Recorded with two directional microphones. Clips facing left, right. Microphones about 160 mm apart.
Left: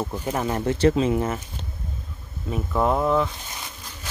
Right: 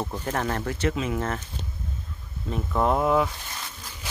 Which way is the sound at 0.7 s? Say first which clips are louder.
Left 7 dB; 30° left (ahead or behind).